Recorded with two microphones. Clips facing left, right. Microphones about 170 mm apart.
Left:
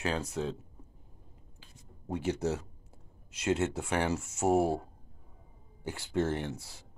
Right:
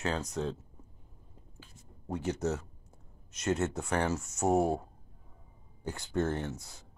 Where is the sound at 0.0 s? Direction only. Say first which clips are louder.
Even; 10° left (ahead or behind).